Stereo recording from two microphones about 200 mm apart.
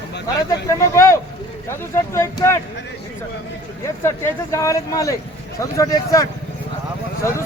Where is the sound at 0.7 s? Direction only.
15° left (ahead or behind).